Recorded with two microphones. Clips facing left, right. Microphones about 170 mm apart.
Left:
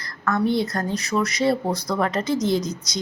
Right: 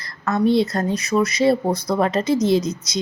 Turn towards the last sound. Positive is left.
turn(degrees=-20)  # may be behind; listen again after turning